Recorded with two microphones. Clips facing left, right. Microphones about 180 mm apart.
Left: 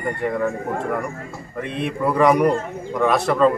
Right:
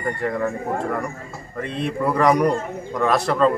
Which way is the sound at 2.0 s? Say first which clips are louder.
Left 2 dB; 5° left (ahead or behind).